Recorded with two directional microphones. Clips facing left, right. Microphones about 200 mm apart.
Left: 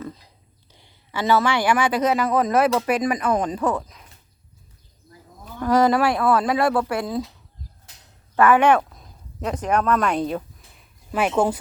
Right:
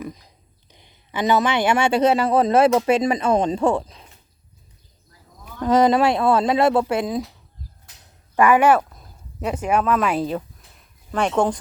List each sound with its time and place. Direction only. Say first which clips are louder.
0.7 s a man's voice: right 1 dB; 20° right (ahead or behind)
5.5 s speech: right 2 dB; 20° right (ahead or behind)
8.4 s speech: right 1 dB; 10° right (ahead or behind); by 11.5 s 5° left (ahead or behind)